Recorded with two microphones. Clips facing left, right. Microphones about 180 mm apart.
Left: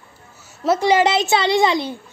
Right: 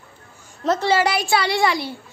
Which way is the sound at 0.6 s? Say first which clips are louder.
Left 3 dB; 10° left (ahead or behind).